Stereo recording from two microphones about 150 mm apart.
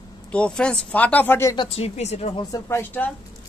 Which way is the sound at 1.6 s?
40° left (ahead or behind).